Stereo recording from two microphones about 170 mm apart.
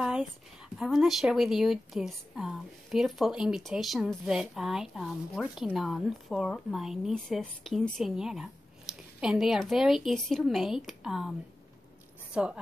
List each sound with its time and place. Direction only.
0.0 s a sound: 5° right (ahead or behind)
0.7 s a woman's voice: centre (ahead or behind)
12.4 s a woman's voice: 5° right (ahead or behind)